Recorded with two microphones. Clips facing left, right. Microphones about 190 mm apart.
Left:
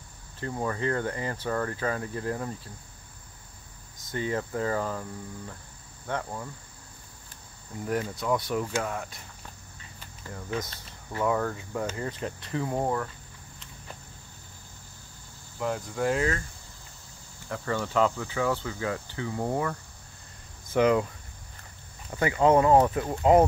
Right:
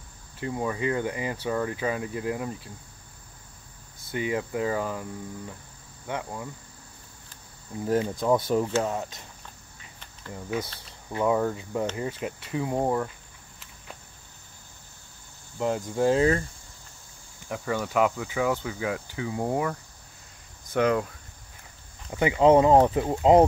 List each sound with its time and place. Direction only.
0.4 s cricket: 10° right (ahead or behind)
4.0 s cricket: 10° right (ahead or behind)
6.0 s cricket: 10° right (ahead or behind)
7.8 s speech: 25° right (ahead or behind)
10.3 s cricket: 10° right (ahead or behind)
15.6 s speech: 25° right (ahead or behind)
17.5 s cricket: 10° right (ahead or behind)
20.7 s speech: centre (ahead or behind)
22.1 s speech: 15° right (ahead or behind)